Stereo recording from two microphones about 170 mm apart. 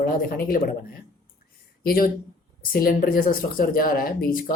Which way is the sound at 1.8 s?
60° left (ahead or behind).